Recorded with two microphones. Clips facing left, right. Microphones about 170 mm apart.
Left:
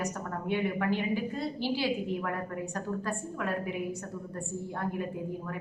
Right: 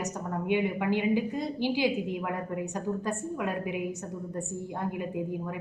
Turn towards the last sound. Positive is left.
turn(degrees=-15)  # may be behind; listen again after turning